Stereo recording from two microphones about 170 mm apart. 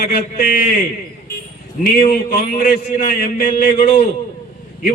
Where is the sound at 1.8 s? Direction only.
55° left (ahead or behind).